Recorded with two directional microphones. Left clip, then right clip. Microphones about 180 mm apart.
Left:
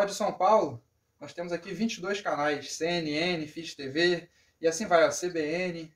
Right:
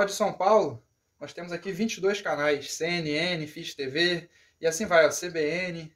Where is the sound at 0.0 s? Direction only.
50° right (ahead or behind).